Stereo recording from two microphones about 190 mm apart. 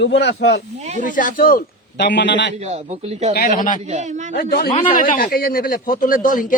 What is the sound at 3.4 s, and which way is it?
Speech, 45° left (ahead or behind).